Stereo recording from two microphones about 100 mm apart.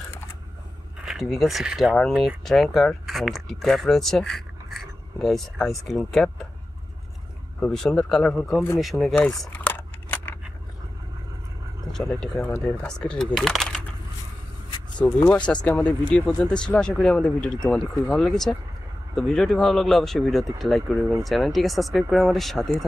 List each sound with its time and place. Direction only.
1.0 s speech: centre (ahead or behind)
7.6 s speech: 5° left (ahead or behind)
9.5 s scissors: 20° left (ahead or behind)
11.9 s speech: 5° left (ahead or behind)
15.2 s speech: 10° left (ahead or behind)